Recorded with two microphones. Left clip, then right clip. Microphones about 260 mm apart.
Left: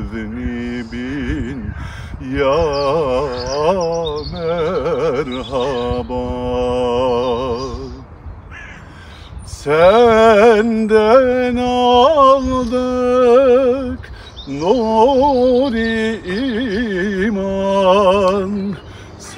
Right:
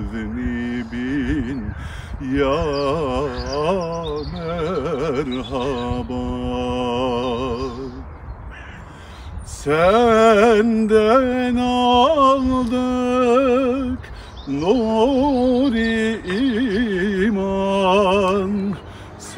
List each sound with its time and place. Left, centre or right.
0.1 s mantra: centre
2.2 s music: centre
9.7 s mantra: centre
14.6 s a sound: centre